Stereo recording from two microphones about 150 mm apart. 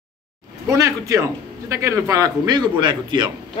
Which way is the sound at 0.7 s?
20° right (ahead or behind).